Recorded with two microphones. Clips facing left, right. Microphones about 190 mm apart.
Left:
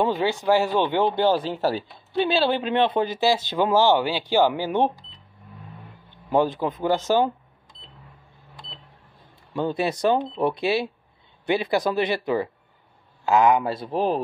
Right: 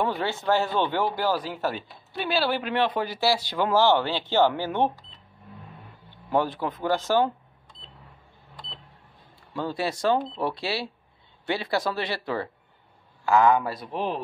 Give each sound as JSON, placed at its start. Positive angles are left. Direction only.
{"t": 0.0, "sound": "speech", "side_deg": 15}
{"t": 6.3, "sound": "speech", "side_deg": 20}
{"t": 9.5, "sound": "speech", "side_deg": 20}
{"t": 13.9, "sound": "speech", "side_deg": 40}